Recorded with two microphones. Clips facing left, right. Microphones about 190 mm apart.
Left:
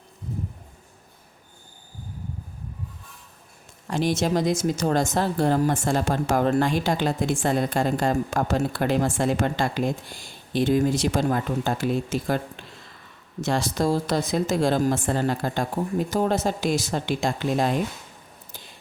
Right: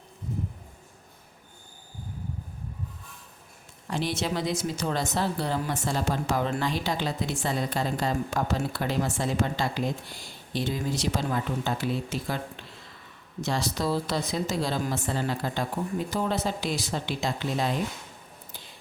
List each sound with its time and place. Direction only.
3.8 s speech: 45° left (ahead or behind)
13.4 s speech: 50° left (ahead or behind)